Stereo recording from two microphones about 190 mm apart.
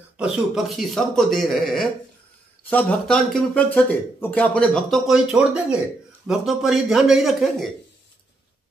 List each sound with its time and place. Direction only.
0.2 s speech: centre (ahead or behind)